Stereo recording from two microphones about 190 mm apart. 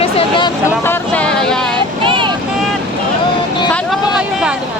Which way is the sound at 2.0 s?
25° right (ahead or behind).